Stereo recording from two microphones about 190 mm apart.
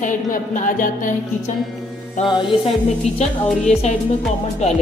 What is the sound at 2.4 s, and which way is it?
Speech, 30° left (ahead or behind).